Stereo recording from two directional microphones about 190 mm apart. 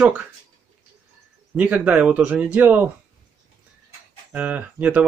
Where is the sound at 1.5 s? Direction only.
5° right (ahead or behind).